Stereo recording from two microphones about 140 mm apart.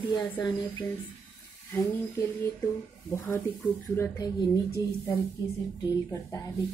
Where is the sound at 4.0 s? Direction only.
25° left (ahead or behind).